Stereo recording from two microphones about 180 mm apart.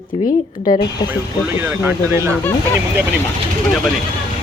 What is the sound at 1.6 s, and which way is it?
Speech, 15° right (ahead or behind).